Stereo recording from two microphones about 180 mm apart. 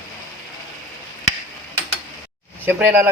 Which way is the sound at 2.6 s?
10° right (ahead or behind).